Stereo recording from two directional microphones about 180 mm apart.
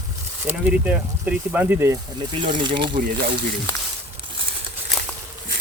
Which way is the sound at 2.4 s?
25° right (ahead or behind).